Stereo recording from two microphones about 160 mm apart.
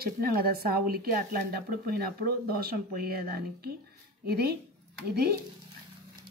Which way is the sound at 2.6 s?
75° right (ahead or behind).